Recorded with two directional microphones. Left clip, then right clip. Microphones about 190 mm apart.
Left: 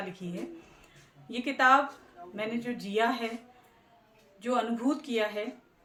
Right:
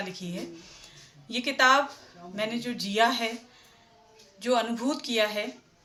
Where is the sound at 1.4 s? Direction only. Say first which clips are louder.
Right 2 dB; 15° left (ahead or behind).